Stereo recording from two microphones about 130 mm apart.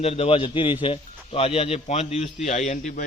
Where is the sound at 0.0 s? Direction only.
50° left (ahead or behind).